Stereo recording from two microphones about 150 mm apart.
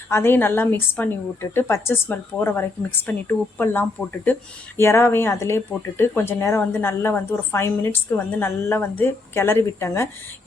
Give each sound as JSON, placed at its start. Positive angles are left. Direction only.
{"t": 0.1, "sound": "speech", "side_deg": 15}